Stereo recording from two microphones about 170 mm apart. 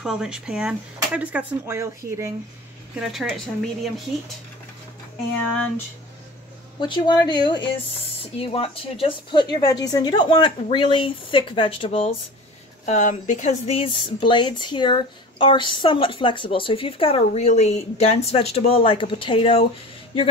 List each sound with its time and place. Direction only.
0.0 s speech: 5° right (ahead or behind)
3.0 s a woman's voice: centre (ahead or behind)
6.8 s speech: 25° left (ahead or behind)